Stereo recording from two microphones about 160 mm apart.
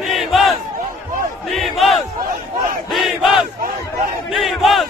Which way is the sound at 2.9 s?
Centre (ahead or behind).